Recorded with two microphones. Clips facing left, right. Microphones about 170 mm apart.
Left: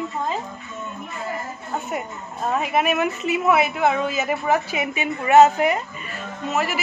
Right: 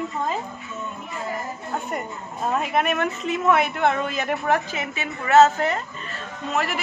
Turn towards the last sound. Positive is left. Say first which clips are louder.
# left 2 dB
turn(degrees=5)  # may be behind; listen again after turning